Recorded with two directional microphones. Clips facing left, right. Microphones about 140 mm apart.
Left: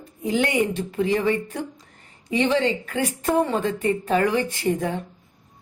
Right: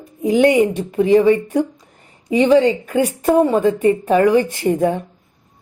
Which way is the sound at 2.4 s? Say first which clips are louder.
Right 9 dB; 35° right (ahead or behind).